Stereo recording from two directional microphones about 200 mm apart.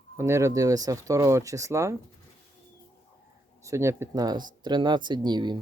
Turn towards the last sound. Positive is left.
turn(degrees=-20)  # may be behind; listen again after turning